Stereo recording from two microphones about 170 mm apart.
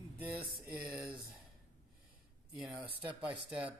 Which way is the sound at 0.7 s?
5° right (ahead or behind).